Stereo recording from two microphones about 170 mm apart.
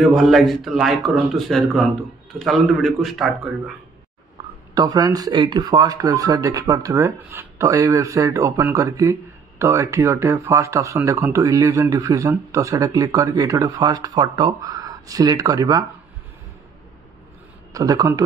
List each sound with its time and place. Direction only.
0.0 s speech: centre (ahead or behind)
4.7 s speech: 20° right (ahead or behind)
17.7 s speech: 20° right (ahead or behind)